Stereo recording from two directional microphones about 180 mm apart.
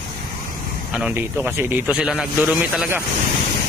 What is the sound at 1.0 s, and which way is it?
Speech, 5° right (ahead or behind).